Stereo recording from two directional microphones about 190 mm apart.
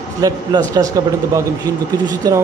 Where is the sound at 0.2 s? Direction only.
20° right (ahead or behind).